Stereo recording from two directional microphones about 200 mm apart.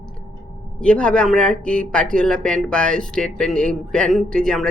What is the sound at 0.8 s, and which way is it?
Speech, 5° left (ahead or behind).